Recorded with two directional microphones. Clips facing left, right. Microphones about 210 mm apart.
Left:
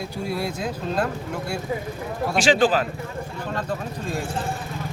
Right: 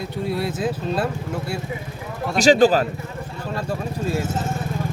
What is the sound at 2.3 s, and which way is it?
Speech, 40° right (ahead or behind).